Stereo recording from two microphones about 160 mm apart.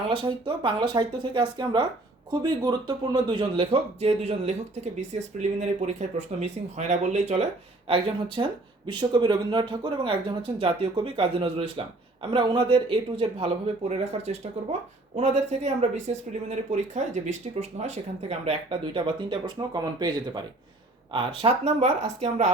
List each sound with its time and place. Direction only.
0.1 s a man's voice: 30° right (ahead or behind)